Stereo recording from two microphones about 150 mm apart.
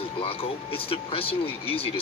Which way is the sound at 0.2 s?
35° left (ahead or behind).